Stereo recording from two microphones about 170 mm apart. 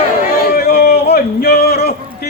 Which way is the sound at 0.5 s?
65° left (ahead or behind).